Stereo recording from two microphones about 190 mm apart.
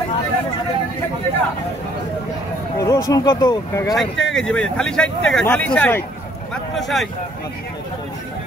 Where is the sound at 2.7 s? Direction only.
15° left (ahead or behind).